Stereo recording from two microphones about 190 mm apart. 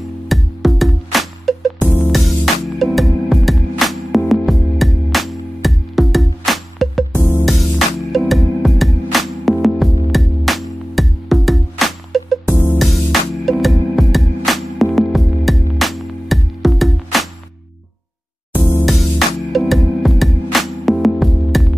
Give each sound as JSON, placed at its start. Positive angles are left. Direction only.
{"t": 0.3, "sound": "music", "side_deg": 0}
{"t": 18.5, "sound": "music", "side_deg": -10}